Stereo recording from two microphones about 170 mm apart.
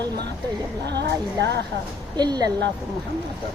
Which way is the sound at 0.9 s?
85° right.